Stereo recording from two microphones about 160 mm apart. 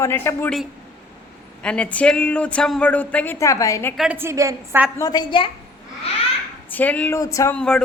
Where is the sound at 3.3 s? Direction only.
20° left (ahead or behind).